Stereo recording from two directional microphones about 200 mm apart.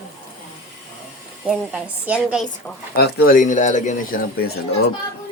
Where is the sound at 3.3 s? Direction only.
40° left (ahead or behind).